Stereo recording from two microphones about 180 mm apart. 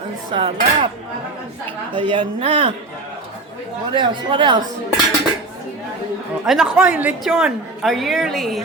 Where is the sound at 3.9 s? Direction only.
25° right (ahead or behind).